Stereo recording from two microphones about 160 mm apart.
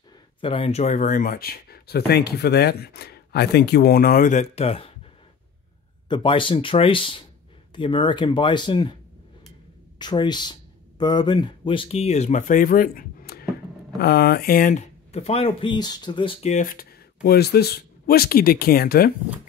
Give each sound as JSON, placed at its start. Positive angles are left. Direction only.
{"t": 0.4, "sound": "speech", "side_deg": 35}
{"t": 6.0, "sound": "speech", "side_deg": 30}
{"t": 9.9, "sound": "speech", "side_deg": 25}
{"t": 16.4, "sound": "speech", "side_deg": 55}